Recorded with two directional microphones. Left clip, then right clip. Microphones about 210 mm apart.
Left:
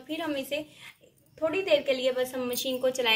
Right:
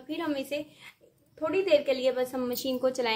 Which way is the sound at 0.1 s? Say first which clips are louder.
Even; 45° right (ahead or behind).